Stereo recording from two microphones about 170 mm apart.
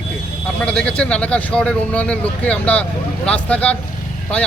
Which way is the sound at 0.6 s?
5° left (ahead or behind).